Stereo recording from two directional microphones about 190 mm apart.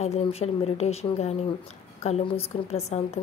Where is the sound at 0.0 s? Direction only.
35° left (ahead or behind).